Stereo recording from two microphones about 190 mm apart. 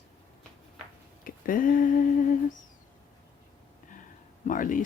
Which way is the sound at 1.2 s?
50° left (ahead or behind).